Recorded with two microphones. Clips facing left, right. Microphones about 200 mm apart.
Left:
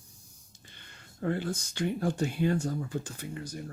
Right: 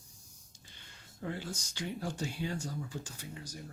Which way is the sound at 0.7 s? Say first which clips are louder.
Left 6 dB; 60° left (ahead or behind).